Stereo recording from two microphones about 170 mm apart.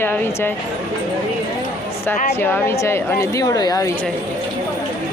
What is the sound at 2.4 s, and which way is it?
Speech, 10° left (ahead or behind).